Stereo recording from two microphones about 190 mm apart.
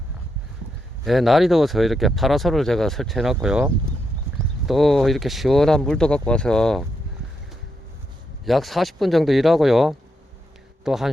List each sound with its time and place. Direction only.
1.0 s speech: centre (ahead or behind)
8.4 s speech: centre (ahead or behind)